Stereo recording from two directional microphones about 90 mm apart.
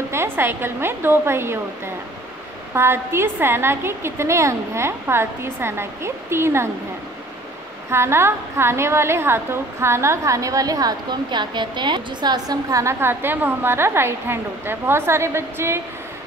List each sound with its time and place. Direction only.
0.1 s a woman's voice: 25° right (ahead or behind)
7.9 s a woman's voice: 30° right (ahead or behind); by 12.5 s 55° right (ahead or behind)
12.7 s a woman's voice: 30° right (ahead or behind)